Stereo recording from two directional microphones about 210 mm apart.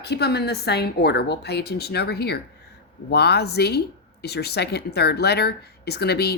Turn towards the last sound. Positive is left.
turn(degrees=50)  # may be behind; listen again after turning